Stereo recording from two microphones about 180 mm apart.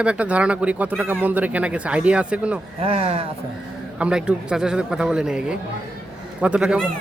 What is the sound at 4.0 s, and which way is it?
A man's voice, 5° right (ahead or behind).